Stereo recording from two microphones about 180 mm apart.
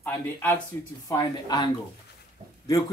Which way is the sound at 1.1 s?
25° left (ahead or behind).